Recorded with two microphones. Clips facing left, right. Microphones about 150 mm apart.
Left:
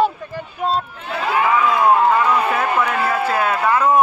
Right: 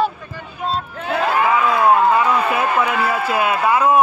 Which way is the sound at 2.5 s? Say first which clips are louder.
Right 1 dB; 10° right (ahead or behind).